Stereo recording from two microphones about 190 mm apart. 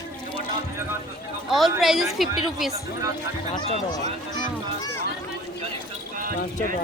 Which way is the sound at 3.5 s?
20° left (ahead or behind).